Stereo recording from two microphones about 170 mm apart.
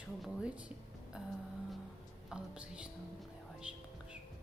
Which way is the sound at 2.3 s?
5° right (ahead or behind).